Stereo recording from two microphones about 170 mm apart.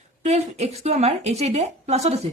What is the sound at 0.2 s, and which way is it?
Speech, 40° right (ahead or behind).